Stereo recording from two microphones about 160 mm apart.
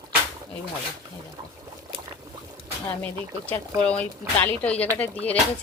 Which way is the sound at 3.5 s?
10° left (ahead or behind).